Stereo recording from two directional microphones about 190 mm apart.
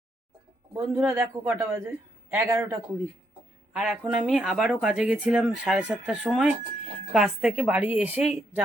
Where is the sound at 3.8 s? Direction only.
5° right (ahead or behind).